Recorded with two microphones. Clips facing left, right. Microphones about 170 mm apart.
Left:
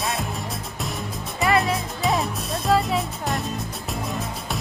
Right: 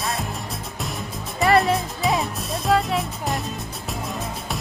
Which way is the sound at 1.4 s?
Centre (ahead or behind).